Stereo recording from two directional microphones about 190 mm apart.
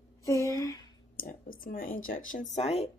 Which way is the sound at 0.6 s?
20° left (ahead or behind).